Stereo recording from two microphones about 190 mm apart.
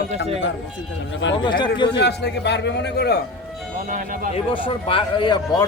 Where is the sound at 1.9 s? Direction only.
65° left (ahead or behind).